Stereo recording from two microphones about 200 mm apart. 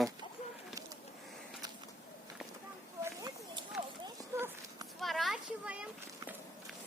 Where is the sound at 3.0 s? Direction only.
15° right (ahead or behind).